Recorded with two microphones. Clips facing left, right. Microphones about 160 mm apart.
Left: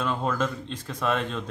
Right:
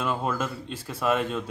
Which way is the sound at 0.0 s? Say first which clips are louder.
Left 1 dB; 10° right (ahead or behind).